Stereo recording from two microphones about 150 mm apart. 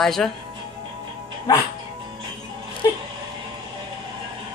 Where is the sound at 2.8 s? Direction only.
25° left (ahead or behind).